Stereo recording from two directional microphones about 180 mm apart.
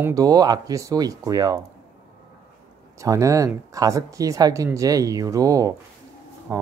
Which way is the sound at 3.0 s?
15° right (ahead or behind).